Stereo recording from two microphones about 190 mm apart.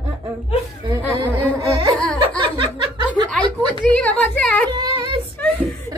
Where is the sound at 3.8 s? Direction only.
5° left (ahead or behind).